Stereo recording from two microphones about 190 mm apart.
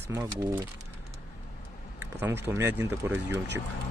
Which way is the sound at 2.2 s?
15° right (ahead or behind).